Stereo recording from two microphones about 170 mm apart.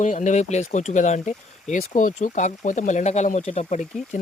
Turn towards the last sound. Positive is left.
turn(degrees=45)  # may be behind; listen again after turning